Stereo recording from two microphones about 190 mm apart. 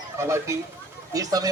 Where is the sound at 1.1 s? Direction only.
20° right (ahead or behind).